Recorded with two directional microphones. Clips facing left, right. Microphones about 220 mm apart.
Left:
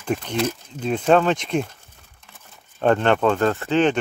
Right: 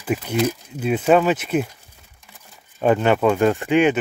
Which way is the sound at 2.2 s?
5° right (ahead or behind).